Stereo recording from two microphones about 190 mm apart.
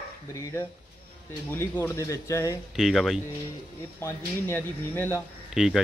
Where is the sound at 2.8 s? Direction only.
Centre (ahead or behind).